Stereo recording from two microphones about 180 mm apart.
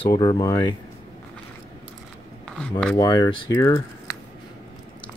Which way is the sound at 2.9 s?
20° left (ahead or behind).